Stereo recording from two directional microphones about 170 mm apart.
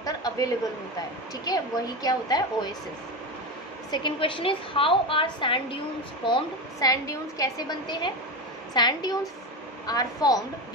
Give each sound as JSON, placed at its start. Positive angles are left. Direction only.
{"t": 0.0, "sound": "a sound", "side_deg": 20}
{"t": 1.5, "sound": "a woman's voice", "side_deg": 20}
{"t": 3.9, "sound": "a woman's voice", "side_deg": 30}